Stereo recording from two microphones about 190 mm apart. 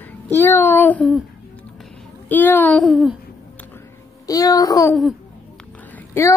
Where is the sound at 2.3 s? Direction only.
10° left (ahead or behind).